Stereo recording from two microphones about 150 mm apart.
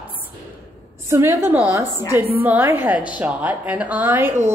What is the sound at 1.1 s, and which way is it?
Speech, 15° right (ahead or behind).